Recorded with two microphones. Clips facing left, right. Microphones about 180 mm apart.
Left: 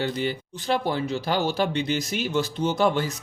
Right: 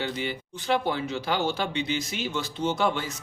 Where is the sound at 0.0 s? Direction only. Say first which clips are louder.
Left 4 dB; 40° left (ahead or behind).